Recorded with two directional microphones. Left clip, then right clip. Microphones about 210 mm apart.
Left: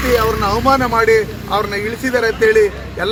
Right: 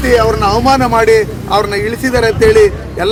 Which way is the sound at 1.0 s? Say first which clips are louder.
Right 4 dB; 25° right (ahead or behind).